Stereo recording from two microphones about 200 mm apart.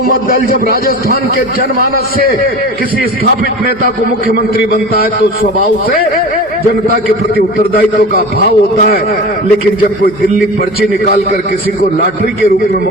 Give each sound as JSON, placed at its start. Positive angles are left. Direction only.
{"t": 0.1, "sound": "a man's voice", "side_deg": 45}
{"t": 8.4, "sound": "a man's voice", "side_deg": 50}